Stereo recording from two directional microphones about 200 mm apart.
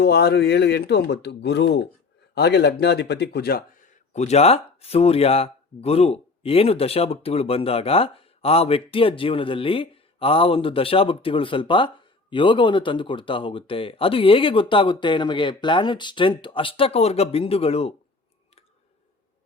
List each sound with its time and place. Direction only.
0.0 s speech: 55° left (ahead or behind); by 17.9 s 30° left (ahead or behind)